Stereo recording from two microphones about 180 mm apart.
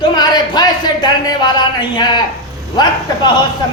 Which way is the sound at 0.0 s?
25° left (ahead or behind).